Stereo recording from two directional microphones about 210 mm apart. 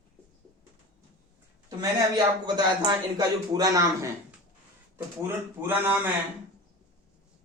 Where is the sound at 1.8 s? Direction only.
20° right (ahead or behind).